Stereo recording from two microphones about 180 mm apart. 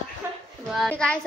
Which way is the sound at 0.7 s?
Centre (ahead or behind).